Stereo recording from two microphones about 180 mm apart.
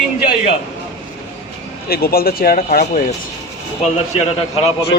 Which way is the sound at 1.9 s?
55° left (ahead or behind).